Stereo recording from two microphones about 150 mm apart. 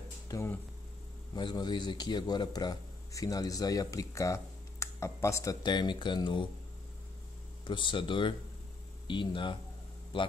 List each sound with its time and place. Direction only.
0.3 s speech: 20° left (ahead or behind)
1.3 s speech: 30° left (ahead or behind)
7.6 s speech: 35° left (ahead or behind)